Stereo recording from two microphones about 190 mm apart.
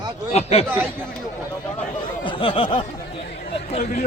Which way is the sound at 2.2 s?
25° left (ahead or behind).